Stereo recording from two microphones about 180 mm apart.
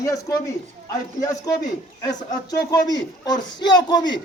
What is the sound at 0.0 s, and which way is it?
Speech, 20° left (ahead or behind).